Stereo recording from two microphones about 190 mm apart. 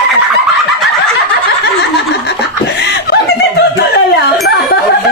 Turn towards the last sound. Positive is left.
turn(degrees=60)  # may be behind; listen again after turning